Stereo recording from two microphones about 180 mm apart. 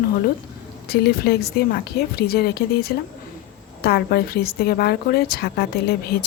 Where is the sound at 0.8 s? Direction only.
60° left (ahead or behind).